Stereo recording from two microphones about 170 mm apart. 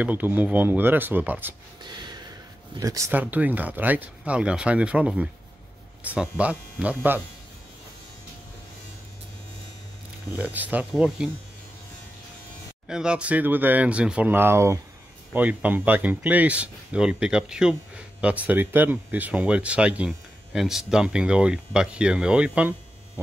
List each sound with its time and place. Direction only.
0.0 s speech: 10° right (ahead or behind)
1.8 s gasp: 25° right (ahead or behind)
2.8 s speech: 20° right (ahead or behind)
6.3 s speech: 10° right (ahead or behind)
10.3 s speech: 10° right (ahead or behind)
12.8 s speech: 5° right (ahead or behind)